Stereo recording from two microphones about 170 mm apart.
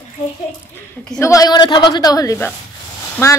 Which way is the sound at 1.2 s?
20° left (ahead or behind).